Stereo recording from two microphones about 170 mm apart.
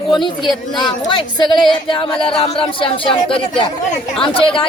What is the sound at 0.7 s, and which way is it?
Speech, 25° left (ahead or behind).